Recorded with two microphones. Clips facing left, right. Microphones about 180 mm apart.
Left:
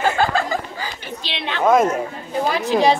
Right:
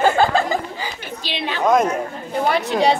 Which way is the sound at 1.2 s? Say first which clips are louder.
Right 2 dB; 5° right (ahead or behind).